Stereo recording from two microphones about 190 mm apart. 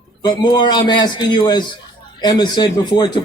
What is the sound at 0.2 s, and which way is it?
Speech, 20° left (ahead or behind).